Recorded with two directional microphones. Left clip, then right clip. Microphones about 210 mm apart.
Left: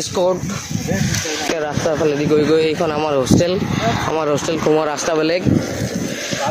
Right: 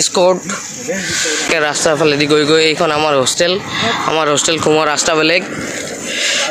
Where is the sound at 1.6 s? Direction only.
10° right (ahead or behind).